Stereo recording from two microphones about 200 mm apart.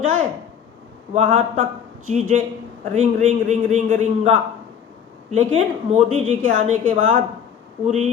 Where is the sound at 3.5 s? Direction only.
35° right (ahead or behind).